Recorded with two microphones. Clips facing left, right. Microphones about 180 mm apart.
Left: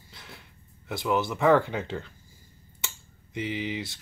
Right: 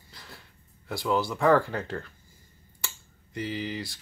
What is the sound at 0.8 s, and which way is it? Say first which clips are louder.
Speech: even; 20° left (ahead or behind).